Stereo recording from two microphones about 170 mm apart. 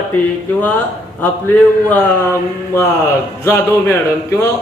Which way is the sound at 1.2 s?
10° left (ahead or behind).